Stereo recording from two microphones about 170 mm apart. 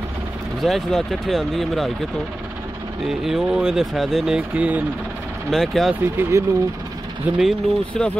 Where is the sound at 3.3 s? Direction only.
5° right (ahead or behind).